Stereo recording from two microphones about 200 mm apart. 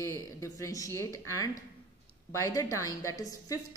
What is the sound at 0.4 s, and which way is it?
A woman's voice, 15° left (ahead or behind).